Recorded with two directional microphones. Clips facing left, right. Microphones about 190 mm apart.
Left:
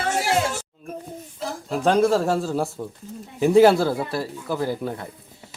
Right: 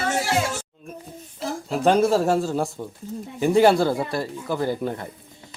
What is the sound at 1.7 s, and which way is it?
Speech, 5° right (ahead or behind).